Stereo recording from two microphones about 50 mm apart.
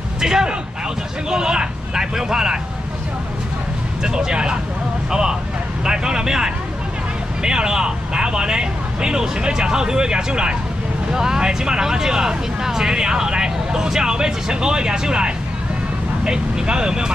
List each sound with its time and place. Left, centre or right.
0.2 s speech: centre
4.0 s speech: centre
5.9 s speech: centre